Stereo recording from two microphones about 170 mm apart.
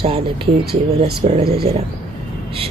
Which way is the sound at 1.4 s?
65° right (ahead or behind).